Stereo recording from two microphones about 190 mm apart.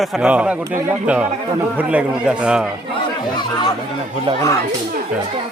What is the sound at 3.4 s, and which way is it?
Speech, 20° left (ahead or behind).